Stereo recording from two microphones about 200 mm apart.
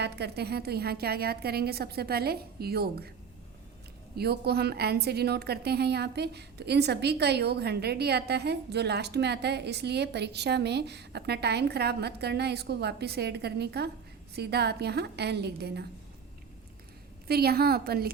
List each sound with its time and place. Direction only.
0.0 s a woman's voice: 55° right (ahead or behind)
4.1 s a woman's voice: 55° right (ahead or behind)
17.2 s a woman's voice: 50° right (ahead or behind)